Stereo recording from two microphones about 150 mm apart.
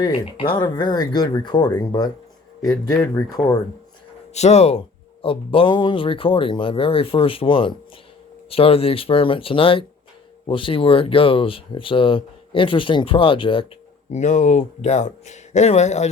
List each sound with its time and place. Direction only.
0.0 s speech: 35° left (ahead or behind)
4.4 s speech: 45° left (ahead or behind)
14.1 s speech: 50° left (ahead or behind)